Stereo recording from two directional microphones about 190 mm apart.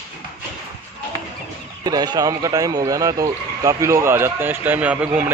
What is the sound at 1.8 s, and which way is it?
Speech, 20° right (ahead or behind).